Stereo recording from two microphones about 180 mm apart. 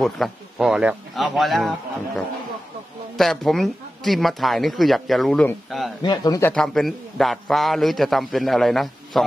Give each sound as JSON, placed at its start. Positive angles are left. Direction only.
{"t": 0.0, "sound": "speech", "side_deg": 0}
{"t": 6.0, "sound": "speech", "side_deg": 20}
{"t": 6.5, "sound": "speech", "side_deg": 5}